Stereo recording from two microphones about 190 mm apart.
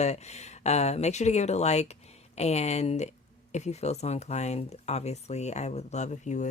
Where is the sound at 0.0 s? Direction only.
35° left (ahead or behind).